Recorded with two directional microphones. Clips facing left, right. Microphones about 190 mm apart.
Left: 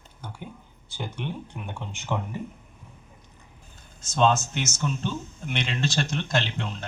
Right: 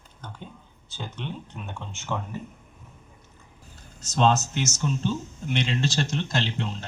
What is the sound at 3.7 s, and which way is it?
Speech, 40° right (ahead or behind).